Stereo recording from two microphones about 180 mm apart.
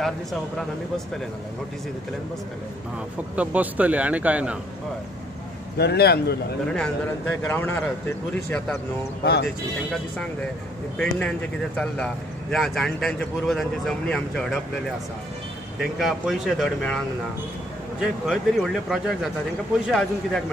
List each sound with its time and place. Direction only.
0.0 s speech: centre (ahead or behind)
3.3 s a man's voice: 10° right (ahead or behind)
5.8 s a man's voice: 65° left (ahead or behind)
6.7 s a man's voice: 5° left (ahead or behind)
9.2 s speech: 70° left (ahead or behind)
11.0 s speech: 5° left (ahead or behind)
16.0 s speech: centre (ahead or behind)
18.2 s speech: centre (ahead or behind)